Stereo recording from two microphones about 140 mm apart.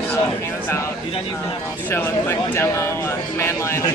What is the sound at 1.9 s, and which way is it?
A man's voice, 15° left (ahead or behind).